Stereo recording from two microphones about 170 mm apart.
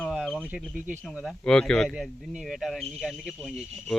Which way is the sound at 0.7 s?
50° right (ahead or behind).